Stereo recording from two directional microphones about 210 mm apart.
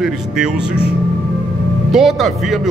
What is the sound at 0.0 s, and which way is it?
A man's voice, 5° right (ahead or behind).